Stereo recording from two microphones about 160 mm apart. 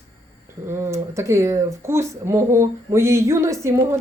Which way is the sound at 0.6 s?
15° right (ahead or behind).